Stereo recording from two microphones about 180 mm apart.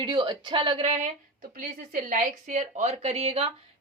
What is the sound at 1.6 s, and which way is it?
A woman's voice, 50° right (ahead or behind).